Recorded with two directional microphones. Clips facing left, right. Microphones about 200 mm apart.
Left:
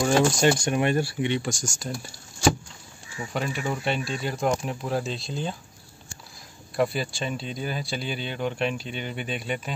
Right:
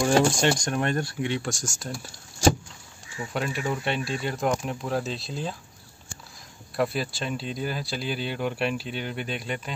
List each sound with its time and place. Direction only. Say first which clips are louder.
0.0 s speech: left 1 dB; 5° left (ahead or behind)
3.3 s speech: even; centre (ahead or behind)
6.8 s speech: left 1 dB; centre (ahead or behind)